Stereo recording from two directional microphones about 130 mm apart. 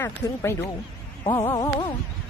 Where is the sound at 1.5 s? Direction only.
25° left (ahead or behind).